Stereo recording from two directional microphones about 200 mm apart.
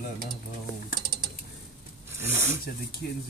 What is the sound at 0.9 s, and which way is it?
Ratchet, 50° right (ahead or behind).